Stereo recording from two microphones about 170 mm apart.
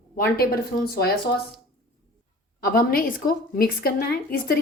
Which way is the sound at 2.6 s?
60° left (ahead or behind).